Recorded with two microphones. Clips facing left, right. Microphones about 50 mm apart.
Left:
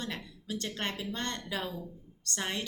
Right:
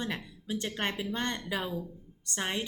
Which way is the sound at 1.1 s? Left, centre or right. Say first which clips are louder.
Right 3 dB; centre.